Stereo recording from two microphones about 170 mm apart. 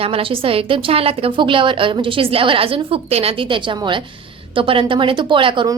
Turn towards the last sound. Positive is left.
turn(degrees=-30)  # may be behind; listen again after turning